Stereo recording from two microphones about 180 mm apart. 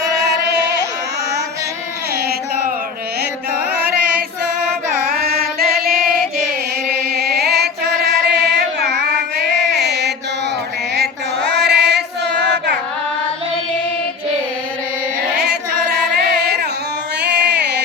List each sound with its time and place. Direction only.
0.2 s music: 70° right (ahead or behind)
4.9 s music: 60° right (ahead or behind)
9.6 s a sound: 70° right (ahead or behind)
10.9 s female singing: 70° right (ahead or behind)
15.4 s singing: 65° right (ahead or behind)
17.2 s a sound: 65° right (ahead or behind)